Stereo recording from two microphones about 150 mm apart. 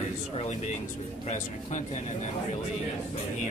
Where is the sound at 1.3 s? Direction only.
50° left (ahead or behind).